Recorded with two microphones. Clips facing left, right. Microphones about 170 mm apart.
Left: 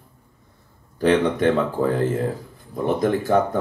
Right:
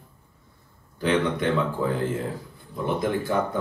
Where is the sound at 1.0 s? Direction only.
40° left (ahead or behind).